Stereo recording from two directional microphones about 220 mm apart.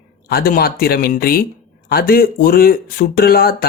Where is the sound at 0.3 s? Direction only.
45° left (ahead or behind).